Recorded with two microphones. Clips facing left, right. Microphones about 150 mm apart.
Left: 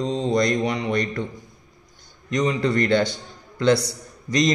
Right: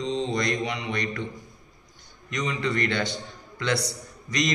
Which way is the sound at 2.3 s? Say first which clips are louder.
Left 7 dB; 35° left (ahead or behind).